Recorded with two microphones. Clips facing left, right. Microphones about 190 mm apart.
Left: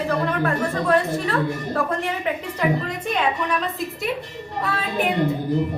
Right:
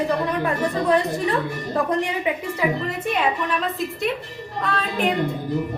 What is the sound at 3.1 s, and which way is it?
Speech, 5° right (ahead or behind).